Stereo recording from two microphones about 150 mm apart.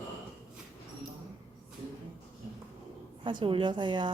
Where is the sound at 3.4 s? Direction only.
35° right (ahead or behind).